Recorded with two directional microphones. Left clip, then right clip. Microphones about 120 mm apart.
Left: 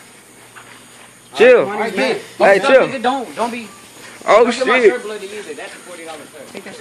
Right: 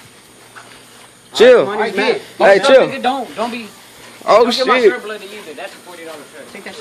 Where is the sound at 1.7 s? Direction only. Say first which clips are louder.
Right 2 dB; 55° left (ahead or behind).